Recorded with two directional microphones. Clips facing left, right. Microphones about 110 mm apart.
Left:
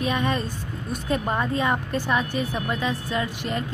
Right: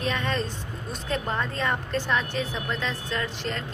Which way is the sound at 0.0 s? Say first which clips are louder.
Left 3 dB; 10° left (ahead or behind).